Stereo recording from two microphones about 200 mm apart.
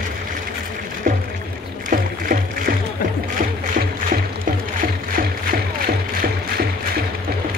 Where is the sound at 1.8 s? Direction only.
45° right (ahead or behind).